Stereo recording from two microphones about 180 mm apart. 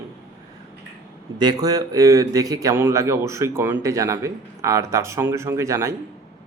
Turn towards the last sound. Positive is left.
turn(degrees=-15)  # may be behind; listen again after turning